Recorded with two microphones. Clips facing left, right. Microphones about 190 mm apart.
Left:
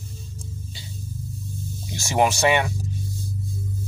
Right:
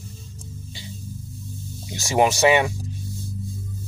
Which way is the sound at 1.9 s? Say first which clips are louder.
Right 2 dB; 15° right (ahead or behind).